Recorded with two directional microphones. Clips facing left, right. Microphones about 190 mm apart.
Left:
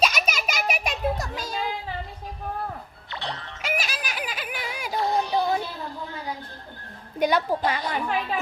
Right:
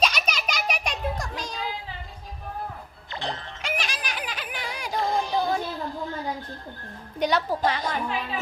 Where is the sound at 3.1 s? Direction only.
45° right (ahead or behind).